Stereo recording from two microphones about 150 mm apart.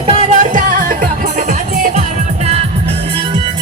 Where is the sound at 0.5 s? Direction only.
70° right (ahead or behind).